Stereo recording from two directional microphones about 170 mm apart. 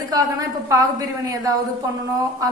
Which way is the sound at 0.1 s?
20° right (ahead or behind).